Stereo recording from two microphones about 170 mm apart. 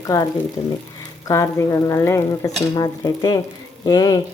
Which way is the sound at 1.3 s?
15° left (ahead or behind).